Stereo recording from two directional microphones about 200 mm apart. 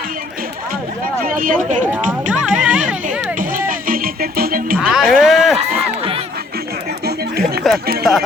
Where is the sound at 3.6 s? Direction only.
45° right (ahead or behind).